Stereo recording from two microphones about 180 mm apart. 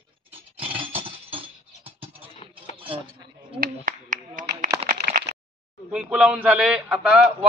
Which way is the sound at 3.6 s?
50° right (ahead or behind).